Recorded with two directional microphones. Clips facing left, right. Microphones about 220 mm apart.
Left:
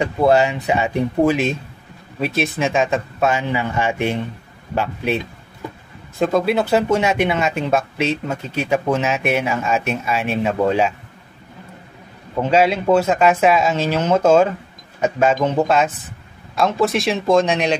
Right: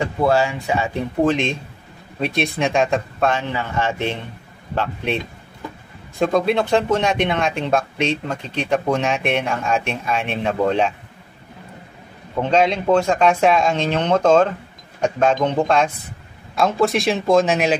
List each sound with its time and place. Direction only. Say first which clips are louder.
0.0 s speech: left 3 dB; 20° left (ahead or behind)
12.4 s speech: left 1 dB; 5° left (ahead or behind)